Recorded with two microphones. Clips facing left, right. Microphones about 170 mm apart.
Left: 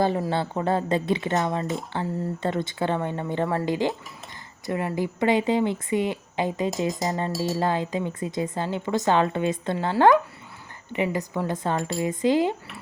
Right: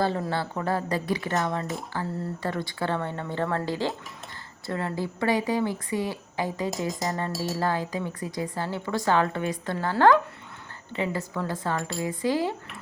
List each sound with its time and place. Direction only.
0.3 s speech: 20° left (ahead or behind)
6.7 s speech: centre (ahead or behind)
7.6 s speech: 20° left (ahead or behind)